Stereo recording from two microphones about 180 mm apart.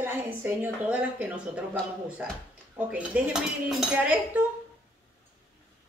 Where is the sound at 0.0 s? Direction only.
10° right (ahead or behind).